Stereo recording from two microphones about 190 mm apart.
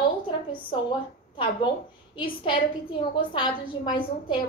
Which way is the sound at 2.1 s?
25° left (ahead or behind).